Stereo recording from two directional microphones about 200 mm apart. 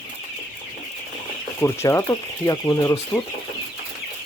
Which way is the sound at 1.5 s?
10° left (ahead or behind).